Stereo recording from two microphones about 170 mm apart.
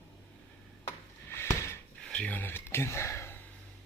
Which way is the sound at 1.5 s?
15° left (ahead or behind).